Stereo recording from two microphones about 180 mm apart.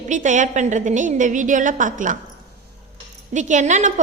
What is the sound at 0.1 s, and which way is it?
A woman's voice, 45° right (ahead or behind).